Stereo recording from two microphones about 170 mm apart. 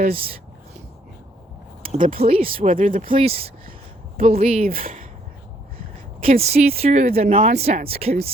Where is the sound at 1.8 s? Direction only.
55° right (ahead or behind).